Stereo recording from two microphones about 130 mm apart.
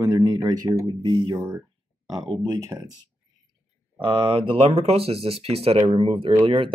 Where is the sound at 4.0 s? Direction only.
40° right (ahead or behind).